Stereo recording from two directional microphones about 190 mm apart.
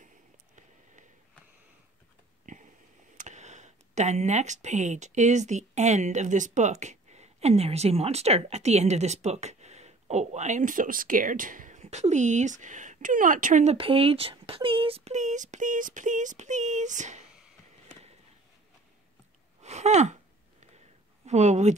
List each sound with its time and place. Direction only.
2.4 s a sound: 40° right (ahead or behind)
3.2 s speech: 40° right (ahead or behind)
13.7 s speech: 30° right (ahead or behind)
19.6 s gasp: 35° right (ahead or behind)
21.3 s speech: 35° right (ahead or behind)